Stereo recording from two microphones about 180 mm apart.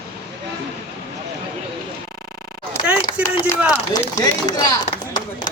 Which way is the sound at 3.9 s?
20° left (ahead or behind).